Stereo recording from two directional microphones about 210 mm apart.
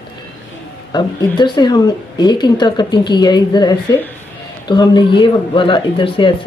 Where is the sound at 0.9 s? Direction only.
20° left (ahead or behind).